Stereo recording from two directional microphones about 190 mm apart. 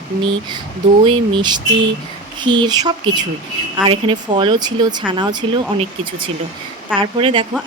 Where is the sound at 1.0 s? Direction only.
25° right (ahead or behind).